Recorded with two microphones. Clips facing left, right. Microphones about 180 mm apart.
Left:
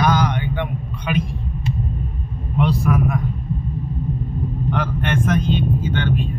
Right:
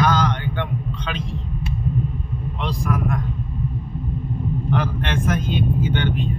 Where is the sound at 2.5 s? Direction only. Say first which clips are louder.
Left 7 dB; 5° left (ahead or behind).